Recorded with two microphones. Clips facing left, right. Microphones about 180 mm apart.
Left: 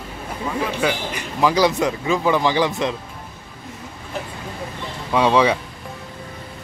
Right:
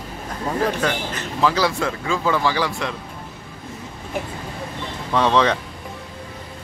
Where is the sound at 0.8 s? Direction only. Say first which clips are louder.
Left 1 dB; 10° left (ahead or behind).